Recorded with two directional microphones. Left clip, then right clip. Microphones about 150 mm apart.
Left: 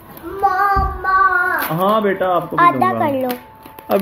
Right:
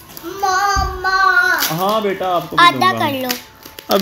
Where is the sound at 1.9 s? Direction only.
15° right (ahead or behind).